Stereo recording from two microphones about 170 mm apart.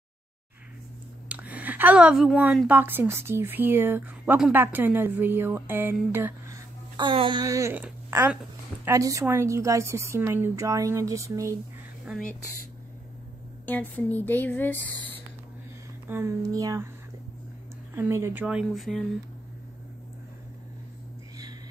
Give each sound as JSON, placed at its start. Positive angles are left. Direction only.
{"t": 1.3, "sound": "a woman's voice", "side_deg": -10}
{"t": 7.0, "sound": "a woman's voice", "side_deg": -30}
{"t": 12.1, "sound": "a woman's voice", "side_deg": -5}
{"t": 13.7, "sound": "speech", "side_deg": 10}
{"t": 16.1, "sound": "a woman's voice", "side_deg": -15}
{"t": 17.9, "sound": "a woman's voice", "side_deg": -15}